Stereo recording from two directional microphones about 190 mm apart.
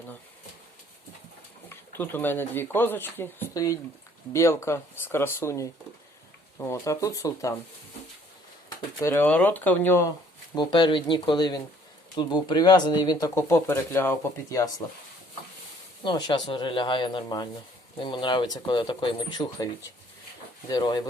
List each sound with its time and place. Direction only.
1.7 s speech: 10° left (ahead or behind)
9.0 s speech: 15° left (ahead or behind)
10.5 s speech: 25° left (ahead or behind)
16.0 s speech: 25° left (ahead or behind)